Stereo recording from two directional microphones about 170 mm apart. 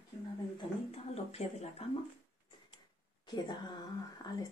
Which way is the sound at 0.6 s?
35° left (ahead or behind).